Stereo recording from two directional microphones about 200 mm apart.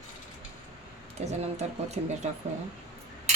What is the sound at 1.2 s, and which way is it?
Speech, 35° right (ahead or behind).